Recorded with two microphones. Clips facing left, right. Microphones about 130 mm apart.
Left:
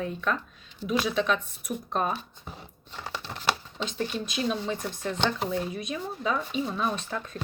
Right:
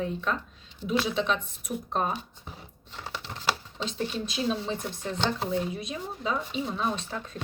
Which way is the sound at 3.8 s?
30° right (ahead or behind).